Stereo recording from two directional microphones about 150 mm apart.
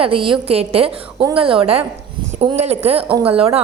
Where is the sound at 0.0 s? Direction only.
35° right (ahead or behind).